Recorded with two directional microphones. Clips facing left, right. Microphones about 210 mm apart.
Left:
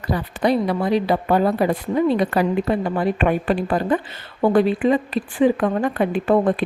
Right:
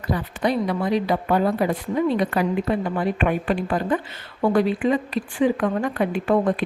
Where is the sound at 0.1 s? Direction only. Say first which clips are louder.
Left 3 dB; 35° left (ahead or behind).